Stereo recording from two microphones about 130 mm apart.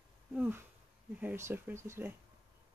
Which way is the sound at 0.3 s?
10° right (ahead or behind).